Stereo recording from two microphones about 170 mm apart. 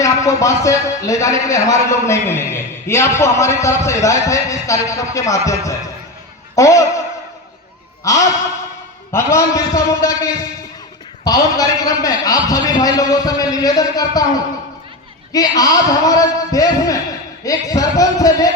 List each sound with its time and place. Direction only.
0.0 s a man's voice: 20° left (ahead or behind)
8.0 s a sound: 20° left (ahead or behind)
9.1 s a man's voice: 20° left (ahead or behind)